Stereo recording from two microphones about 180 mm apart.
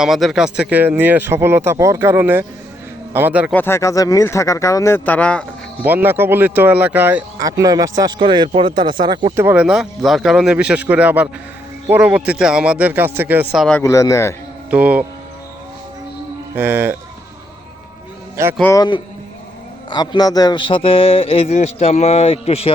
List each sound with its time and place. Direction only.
0.0 s speech: centre (ahead or behind)
3.5 s speech: 10° left (ahead or behind)
5.8 s a man's voice: 10° right (ahead or behind); by 9.3 s 25° right (ahead or behind)
9.3 s speech: 10° right (ahead or behind)
13.8 s speech: 15° left (ahead or behind)
14.7 s speech: 10° right (ahead or behind)
16.6 s speech: 10° right (ahead or behind)
18.6 s a man's voice: 20° left (ahead or behind)